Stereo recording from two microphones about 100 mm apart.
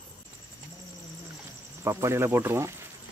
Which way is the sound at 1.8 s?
25° right (ahead or behind).